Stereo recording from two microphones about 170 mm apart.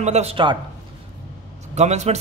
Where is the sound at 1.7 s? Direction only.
40° right (ahead or behind).